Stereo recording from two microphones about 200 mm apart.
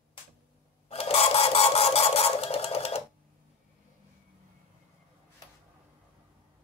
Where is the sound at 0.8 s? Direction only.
30° left (ahead or behind).